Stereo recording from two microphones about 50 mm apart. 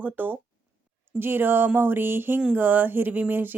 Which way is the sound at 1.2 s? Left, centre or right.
Right.